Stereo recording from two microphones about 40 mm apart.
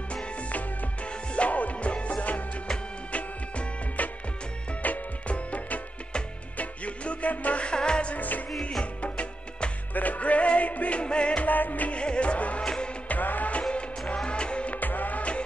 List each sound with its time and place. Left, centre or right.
0.1 s music: left
7.6 s music: left
8.1 s music: left
9.0 s music: left
11.4 s music: left
11.9 s music: left
12.6 s music: centre
13.1 s music: left
13.5 s music: left
14.8 s music: left